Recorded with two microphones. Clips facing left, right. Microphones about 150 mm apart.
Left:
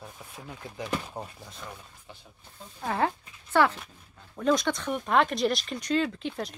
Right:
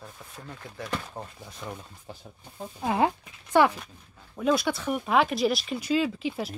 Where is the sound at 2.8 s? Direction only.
15° right (ahead or behind).